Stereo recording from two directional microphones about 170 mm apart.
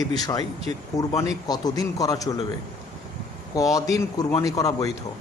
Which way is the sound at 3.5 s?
20° left (ahead or behind).